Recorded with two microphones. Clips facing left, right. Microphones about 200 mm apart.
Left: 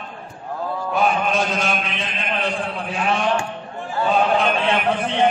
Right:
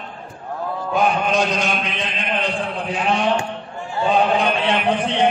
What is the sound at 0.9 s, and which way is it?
Mantra, 15° right (ahead or behind).